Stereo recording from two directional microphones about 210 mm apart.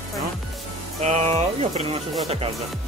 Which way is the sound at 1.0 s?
30° right (ahead or behind).